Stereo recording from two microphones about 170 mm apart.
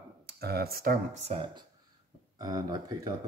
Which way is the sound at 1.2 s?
35° right (ahead or behind).